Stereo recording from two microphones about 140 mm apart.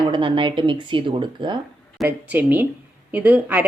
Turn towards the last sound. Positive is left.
turn(degrees=-10)  # may be behind; listen again after turning